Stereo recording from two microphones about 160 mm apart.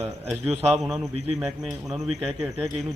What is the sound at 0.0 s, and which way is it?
A man's voice, 10° right (ahead or behind).